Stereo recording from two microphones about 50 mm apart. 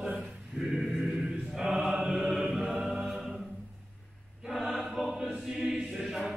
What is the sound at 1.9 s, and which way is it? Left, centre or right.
Chant, centre.